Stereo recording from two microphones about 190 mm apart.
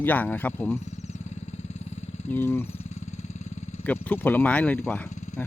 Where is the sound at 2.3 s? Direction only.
10° left (ahead or behind).